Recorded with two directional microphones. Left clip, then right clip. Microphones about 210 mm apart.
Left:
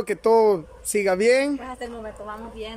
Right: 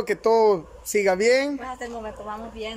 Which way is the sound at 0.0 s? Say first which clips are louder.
Left 1 dB; 5° left (ahead or behind).